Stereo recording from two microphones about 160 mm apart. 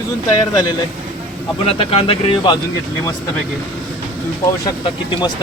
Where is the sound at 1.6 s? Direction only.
35° left (ahead or behind).